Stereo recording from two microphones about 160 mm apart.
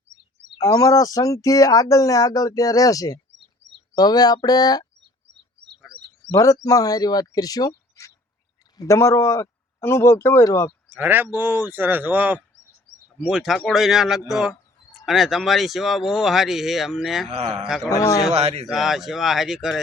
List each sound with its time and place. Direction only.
0.6 s speech: 20° left (ahead or behind)
5.9 s a sound: 5° right (ahead or behind)
6.3 s speech: 20° left (ahead or behind)
10.8 s speech: 10° right (ahead or behind)
17.3 s speech: 45° right (ahead or behind)
17.6 s speech: centre (ahead or behind)
17.8 s speech: 20° left (ahead or behind)
18.3 s speech: 40° right (ahead or behind)
18.7 s speech: centre (ahead or behind)